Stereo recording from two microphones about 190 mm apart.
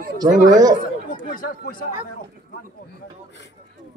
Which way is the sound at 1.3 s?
45° left (ahead or behind).